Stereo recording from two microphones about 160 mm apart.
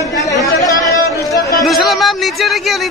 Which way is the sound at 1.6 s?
Centre (ahead or behind).